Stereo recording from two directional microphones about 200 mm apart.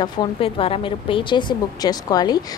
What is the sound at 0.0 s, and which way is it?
A woman's voice, 25° left (ahead or behind).